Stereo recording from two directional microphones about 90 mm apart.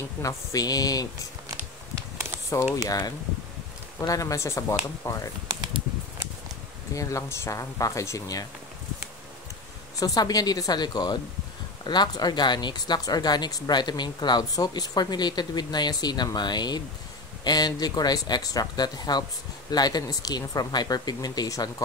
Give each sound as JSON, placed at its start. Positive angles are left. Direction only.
{"t": 0.2, "sound": "speech", "side_deg": 35}
{"t": 2.0, "sound": "a sound", "side_deg": -35}
{"t": 2.7, "sound": "speech", "side_deg": 45}
{"t": 6.9, "sound": "speech", "side_deg": 35}
{"t": 9.9, "sound": "speech", "side_deg": 45}